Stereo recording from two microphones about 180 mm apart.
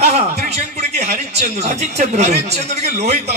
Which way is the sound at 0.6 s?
40° right (ahead or behind).